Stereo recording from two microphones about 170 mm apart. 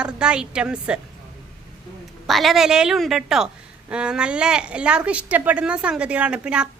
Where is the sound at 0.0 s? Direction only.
5° right (ahead or behind).